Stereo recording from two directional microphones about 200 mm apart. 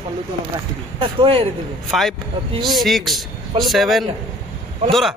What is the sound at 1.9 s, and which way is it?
Speech, centre (ahead or behind).